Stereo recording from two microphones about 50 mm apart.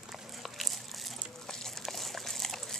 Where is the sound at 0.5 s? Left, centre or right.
Centre.